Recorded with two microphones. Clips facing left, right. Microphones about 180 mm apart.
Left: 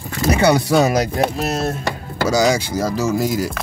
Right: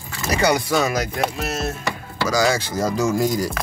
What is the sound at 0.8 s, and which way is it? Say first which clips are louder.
Speech: left 5 dB; 35° left (ahead or behind).